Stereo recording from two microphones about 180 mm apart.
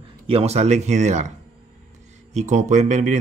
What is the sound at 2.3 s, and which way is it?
Speech, 40° right (ahead or behind).